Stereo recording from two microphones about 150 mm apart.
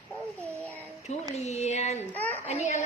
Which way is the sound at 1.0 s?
45° left (ahead or behind).